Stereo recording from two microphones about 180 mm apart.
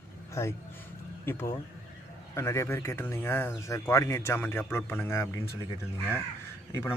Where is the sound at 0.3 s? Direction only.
15° left (ahead or behind).